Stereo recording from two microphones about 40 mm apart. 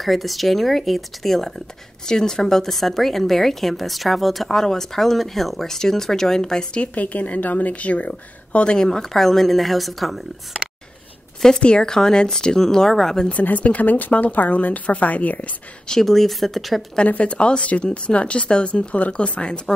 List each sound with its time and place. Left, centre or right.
0.0 s speech: centre
4.5 s speech: centre
6.8 s a woman's voice: left
8.7 s speech: centre
11.6 s speech: left
13.3 s a woman's voice: left
15.9 s speech: centre
17.0 s a woman's voice: left